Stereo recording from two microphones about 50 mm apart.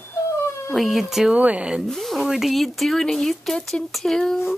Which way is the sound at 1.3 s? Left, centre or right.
Right.